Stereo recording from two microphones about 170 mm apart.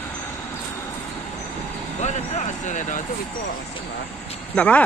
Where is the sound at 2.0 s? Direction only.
40° left (ahead or behind).